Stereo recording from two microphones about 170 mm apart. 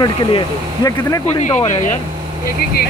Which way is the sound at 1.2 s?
40° left (ahead or behind).